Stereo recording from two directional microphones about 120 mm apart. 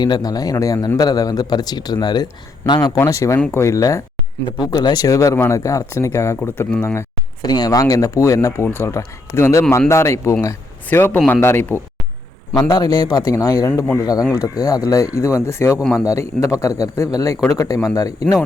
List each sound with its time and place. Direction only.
0.0 s a man's voice: 35° left (ahead or behind)
4.6 s a man's voice: 35° left (ahead or behind)
7.4 s a man's voice: 35° left (ahead or behind)
12.5 s a man's voice: 30° left (ahead or behind)
15.8 s a man's voice: centre (ahead or behind)
16.4 s speech: 25° left (ahead or behind)